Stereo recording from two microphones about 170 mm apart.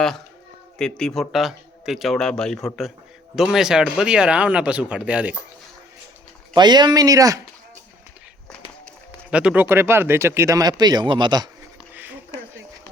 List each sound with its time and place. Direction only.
0.8 s speech: 5° left (ahead or behind)
6.5 s speech: 25° right (ahead or behind)
9.3 s speech: 5° right (ahead or behind); by 11.4 s 25° right (ahead or behind)